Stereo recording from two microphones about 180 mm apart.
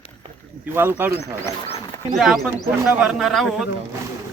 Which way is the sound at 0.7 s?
10° right (ahead or behind).